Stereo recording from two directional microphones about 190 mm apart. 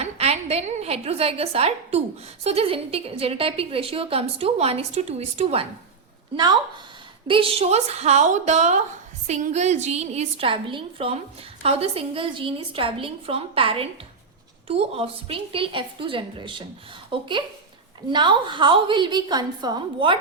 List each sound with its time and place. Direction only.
0.0 s a woman's voice: 35° right (ahead or behind)
6.3 s a woman's voice: 20° right (ahead or behind)